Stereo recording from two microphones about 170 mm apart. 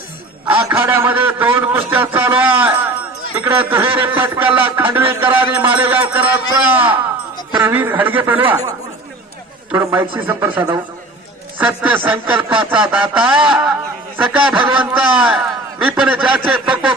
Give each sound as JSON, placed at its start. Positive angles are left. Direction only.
{"t": 0.4, "sound": "a man's voice", "side_deg": -10}
{"t": 9.7, "sound": "a man's voice", "side_deg": -15}
{"t": 12.5, "sound": "a sound", "side_deg": -30}
{"t": 12.8, "sound": "a man's voice", "side_deg": -10}